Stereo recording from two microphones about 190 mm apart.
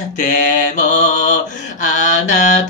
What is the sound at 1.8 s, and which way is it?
Mantra, 40° left (ahead or behind).